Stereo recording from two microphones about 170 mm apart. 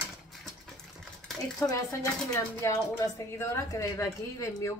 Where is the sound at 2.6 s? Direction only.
20° left (ahead or behind).